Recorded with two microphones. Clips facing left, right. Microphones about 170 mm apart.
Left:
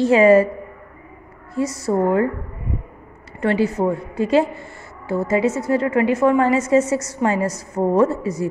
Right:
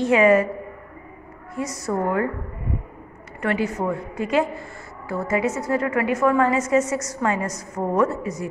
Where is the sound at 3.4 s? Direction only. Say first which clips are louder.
Left 5 dB; 30° left (ahead or behind).